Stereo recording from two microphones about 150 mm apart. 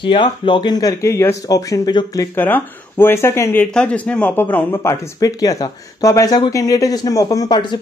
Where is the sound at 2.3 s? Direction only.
15° left (ahead or behind).